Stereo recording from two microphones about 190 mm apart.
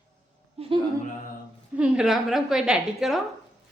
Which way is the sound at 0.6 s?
35° right (ahead or behind).